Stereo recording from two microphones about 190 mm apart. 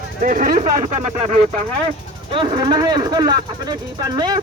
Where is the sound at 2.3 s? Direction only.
25° right (ahead or behind).